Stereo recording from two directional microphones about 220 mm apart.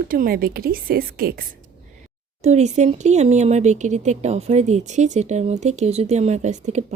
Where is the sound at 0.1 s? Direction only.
40° right (ahead or behind).